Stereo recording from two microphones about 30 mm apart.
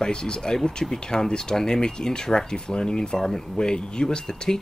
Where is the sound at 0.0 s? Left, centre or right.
Left.